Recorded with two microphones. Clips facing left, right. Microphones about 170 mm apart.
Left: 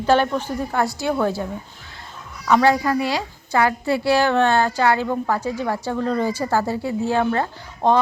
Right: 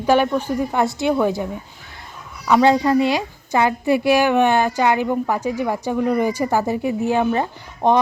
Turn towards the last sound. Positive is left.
turn(degrees=-15)  # may be behind; listen again after turning